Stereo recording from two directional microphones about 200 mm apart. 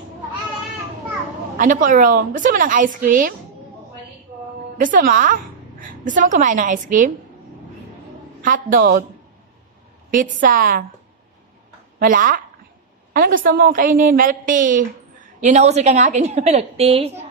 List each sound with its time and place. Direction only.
1.6 s a woman's voice: 40° right (ahead or behind)
4.7 s a woman's voice: 45° right (ahead or behind)
8.4 s a woman's voice: 45° right (ahead or behind)
10.4 s a woman's voice: 45° right (ahead or behind)
12.0 s a woman's voice: 45° right (ahead or behind)